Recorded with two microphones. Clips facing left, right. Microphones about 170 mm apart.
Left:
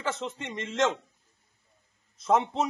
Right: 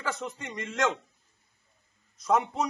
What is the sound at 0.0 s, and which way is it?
Speech, 25° left (ahead or behind).